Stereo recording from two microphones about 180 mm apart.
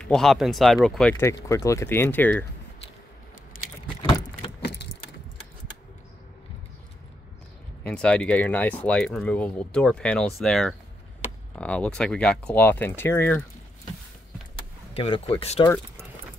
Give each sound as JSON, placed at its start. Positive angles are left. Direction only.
{"t": 0.0, "sound": "speech", "side_deg": 5}
{"t": 4.6, "sound": "keys jangling", "side_deg": 65}
{"t": 7.8, "sound": "speech", "side_deg": 5}
{"t": 15.0, "sound": "speech", "side_deg": 30}